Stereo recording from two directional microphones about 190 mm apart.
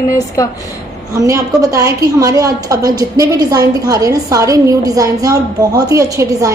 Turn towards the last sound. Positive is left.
turn(degrees=-15)  # may be behind; listen again after turning